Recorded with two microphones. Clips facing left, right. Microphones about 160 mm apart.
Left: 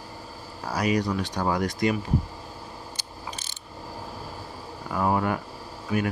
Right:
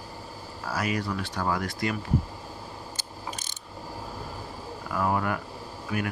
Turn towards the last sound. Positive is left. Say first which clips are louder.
# left 4 dB
turn(degrees=25)  # may be behind; listen again after turning